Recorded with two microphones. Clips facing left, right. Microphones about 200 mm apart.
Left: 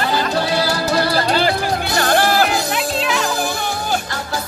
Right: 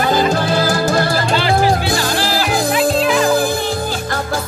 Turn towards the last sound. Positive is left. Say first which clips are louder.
# right 6 dB
turn(degrees=0)  # may be behind; listen again after turning